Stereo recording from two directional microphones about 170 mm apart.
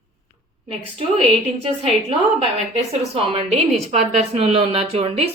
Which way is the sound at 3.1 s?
35° right (ahead or behind).